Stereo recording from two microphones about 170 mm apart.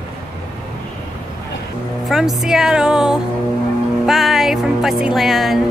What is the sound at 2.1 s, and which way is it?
Speech, centre (ahead or behind).